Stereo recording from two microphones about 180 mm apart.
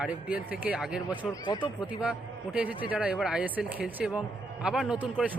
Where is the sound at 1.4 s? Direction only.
25° left (ahead or behind).